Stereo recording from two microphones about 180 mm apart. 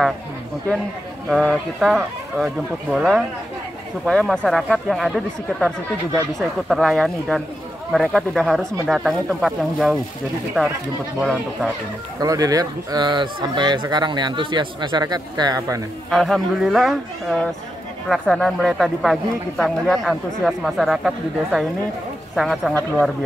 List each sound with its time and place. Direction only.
1.3 s speech: 5° left (ahead or behind)
6.7 s speech: centre (ahead or behind)
12.2 s speech: 20° right (ahead or behind)
16.1 s speech: centre (ahead or behind)